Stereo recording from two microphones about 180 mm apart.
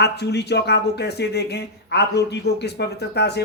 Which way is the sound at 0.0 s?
70° left (ahead or behind).